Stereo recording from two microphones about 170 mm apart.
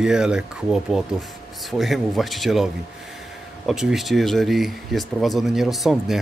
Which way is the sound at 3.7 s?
Centre (ahead or behind).